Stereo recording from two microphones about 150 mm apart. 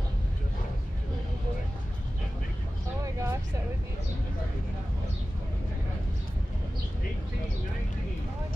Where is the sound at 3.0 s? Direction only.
20° right (ahead or behind).